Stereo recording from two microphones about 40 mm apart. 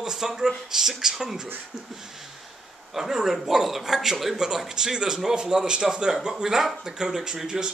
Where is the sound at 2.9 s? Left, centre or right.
Centre.